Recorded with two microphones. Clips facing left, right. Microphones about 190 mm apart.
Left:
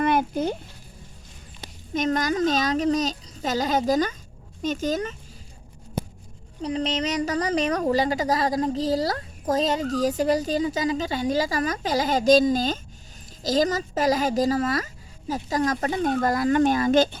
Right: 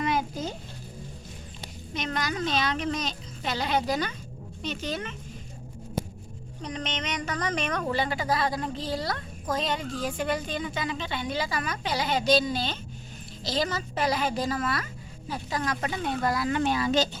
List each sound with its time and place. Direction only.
0.0 s a sound: 55° left (ahead or behind)
1.9 s a woman's voice: 45° left (ahead or behind)
6.6 s a woman's voice: 30° left (ahead or behind); by 17.2 s 50° left (ahead or behind)